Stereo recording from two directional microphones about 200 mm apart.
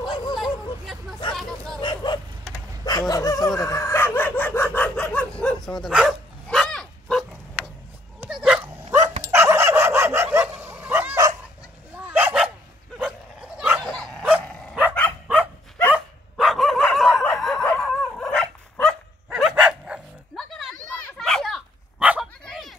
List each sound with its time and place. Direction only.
0.1 s hubbub: 20° left (ahead or behind)
1.3 s hubbub: centre (ahead or behind)
1.8 s bow-wow: 25° left (ahead or behind)
2.8 s a sound: 20° left (ahead or behind)
3.4 s chicken: 15° left (ahead or behind)
8.3 s dog: 5° right (ahead or behind)
9.2 s fowl: 15° right (ahead or behind)
12.0 s dog: 10° right (ahead or behind)
13.6 s bow-wow: centre (ahead or behind)
14.5 s dog: 5° left (ahead or behind)
15.9 s dog: centre (ahead or behind)
21.2 s a sound: 5° left (ahead or behind)
22.0 s dog: 5° right (ahead or behind)
22.4 s a sound: centre (ahead or behind)